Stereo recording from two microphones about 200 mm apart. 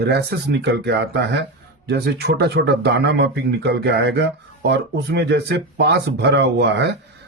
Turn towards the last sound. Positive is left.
turn(degrees=-60)  # may be behind; listen again after turning